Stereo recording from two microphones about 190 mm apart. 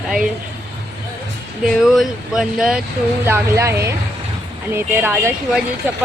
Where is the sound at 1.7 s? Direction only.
Centre (ahead or behind).